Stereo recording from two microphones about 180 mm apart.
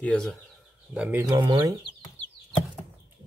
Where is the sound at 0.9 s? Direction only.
10° right (ahead or behind).